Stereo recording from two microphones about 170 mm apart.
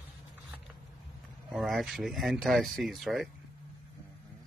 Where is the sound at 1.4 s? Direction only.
Centre (ahead or behind).